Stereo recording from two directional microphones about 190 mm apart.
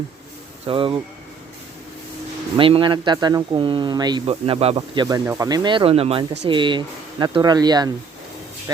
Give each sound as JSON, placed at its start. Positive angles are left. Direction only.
{"t": 0.7, "sound": "speech", "side_deg": -30}
{"t": 2.6, "sound": "speech", "side_deg": -30}
{"t": 5.0, "sound": "speech", "side_deg": -15}